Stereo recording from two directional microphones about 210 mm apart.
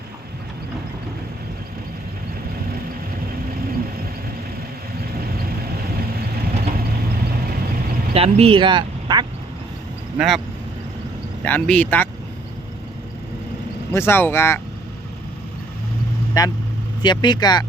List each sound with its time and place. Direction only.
6.5 s vehicle: 35° right (ahead or behind)
8.1 s speech: 25° right (ahead or behind)
10.2 s speech: centre (ahead or behind)
11.4 s speech: 5° left (ahead or behind)
13.9 s speech: 10° left (ahead or behind)
16.4 s speech: 20° left (ahead or behind)